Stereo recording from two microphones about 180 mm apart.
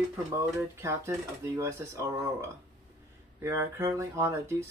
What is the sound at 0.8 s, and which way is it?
Speech, 15° right (ahead or behind).